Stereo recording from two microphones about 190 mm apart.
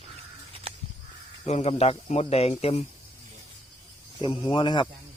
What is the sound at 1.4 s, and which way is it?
Speech, 35° left (ahead or behind).